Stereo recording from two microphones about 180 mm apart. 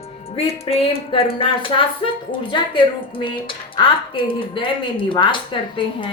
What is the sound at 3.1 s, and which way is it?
Speech, 30° left (ahead or behind).